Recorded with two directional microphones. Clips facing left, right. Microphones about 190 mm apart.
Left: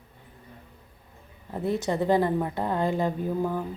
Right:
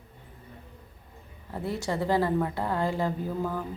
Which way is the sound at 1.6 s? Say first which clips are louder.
Left 4 dB; 20° left (ahead or behind).